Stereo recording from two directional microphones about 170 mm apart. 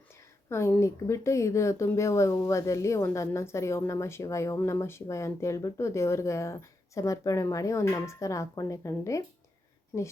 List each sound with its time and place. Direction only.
0.5 s speech: 15° left (ahead or behind)